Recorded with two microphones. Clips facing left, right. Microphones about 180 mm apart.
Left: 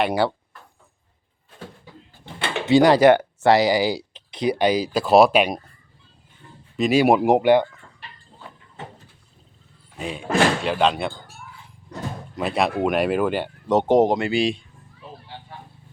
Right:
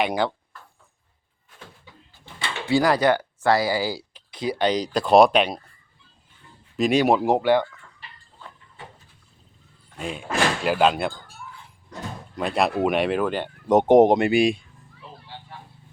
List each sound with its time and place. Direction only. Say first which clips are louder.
0.0 s speech: left 2 dB; 5° left (ahead or behind)
1.5 s a sound: left 7 dB; 35° left (ahead or behind)
2.2 s drawer open or close: left 4 dB; 60° left (ahead or behind)
2.6 s speech: left 6 dB; 20° left (ahead or behind)
6.7 s speech: left 2 dB; 5° left (ahead or behind)
9.9 s speech: left 4 dB; centre (ahead or behind)
12.4 s speech: even; centre (ahead or behind)
13.7 s speech: right 3 dB; 15° right (ahead or behind)